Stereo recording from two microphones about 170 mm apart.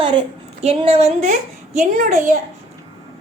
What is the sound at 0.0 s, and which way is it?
A woman's voice, 30° right (ahead or behind).